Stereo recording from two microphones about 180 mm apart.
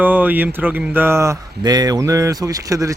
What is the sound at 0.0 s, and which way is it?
Speech, 10° right (ahead or behind).